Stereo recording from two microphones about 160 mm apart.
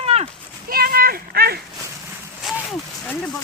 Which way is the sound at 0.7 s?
70° right (ahead or behind).